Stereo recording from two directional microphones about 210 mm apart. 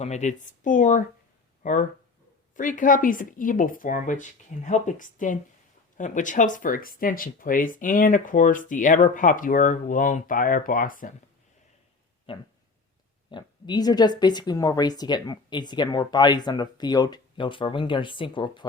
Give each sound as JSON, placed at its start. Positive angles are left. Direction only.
{"t": 0.0, "sound": "speech", "side_deg": 35}
{"t": 12.3, "sound": "speech", "side_deg": 25}